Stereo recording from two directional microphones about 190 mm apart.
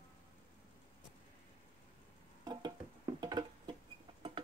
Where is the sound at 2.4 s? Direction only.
20° right (ahead or behind).